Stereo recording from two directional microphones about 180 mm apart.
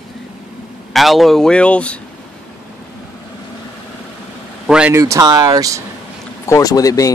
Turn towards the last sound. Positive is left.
turn(degrees=20)  # may be behind; listen again after turning